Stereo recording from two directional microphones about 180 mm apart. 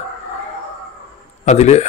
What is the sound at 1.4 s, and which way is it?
Speech, 40° left (ahead or behind).